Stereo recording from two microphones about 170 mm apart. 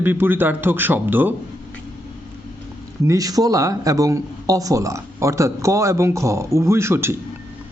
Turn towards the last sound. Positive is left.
turn(degrees=-15)  # may be behind; listen again after turning